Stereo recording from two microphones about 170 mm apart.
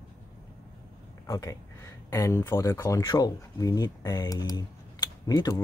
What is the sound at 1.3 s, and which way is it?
Speech, 20° left (ahead or behind).